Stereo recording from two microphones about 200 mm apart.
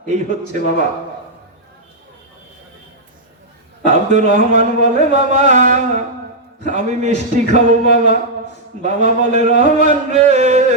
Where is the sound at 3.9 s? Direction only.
35° right (ahead or behind).